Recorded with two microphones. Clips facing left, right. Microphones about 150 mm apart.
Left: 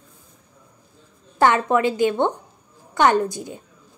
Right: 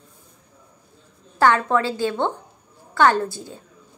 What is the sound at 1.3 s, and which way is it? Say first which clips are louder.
A woman's voice: left 1 dB; 20° left (ahead or behind).